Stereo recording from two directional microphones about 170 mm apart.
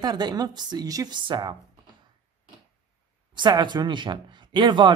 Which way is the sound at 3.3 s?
25° right (ahead or behind).